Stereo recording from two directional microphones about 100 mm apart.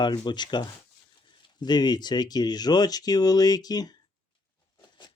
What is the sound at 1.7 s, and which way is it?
Speech, 45° left (ahead or behind).